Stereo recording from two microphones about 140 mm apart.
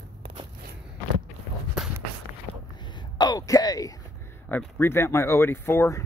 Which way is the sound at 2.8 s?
35° left (ahead or behind).